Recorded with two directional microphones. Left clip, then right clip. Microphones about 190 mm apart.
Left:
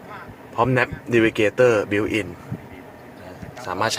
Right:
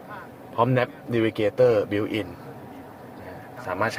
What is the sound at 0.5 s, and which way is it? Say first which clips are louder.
Speech: left 3 dB; 20° left (ahead or behind).